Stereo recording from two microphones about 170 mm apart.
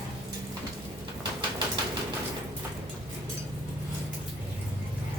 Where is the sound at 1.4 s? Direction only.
30° right (ahead or behind).